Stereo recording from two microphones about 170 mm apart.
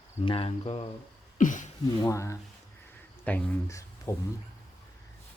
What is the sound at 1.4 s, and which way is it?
Speech, 50° left (ahead or behind).